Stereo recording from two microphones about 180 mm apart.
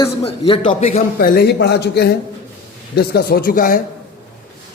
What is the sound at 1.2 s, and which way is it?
A man's voice, 55° left (ahead or behind).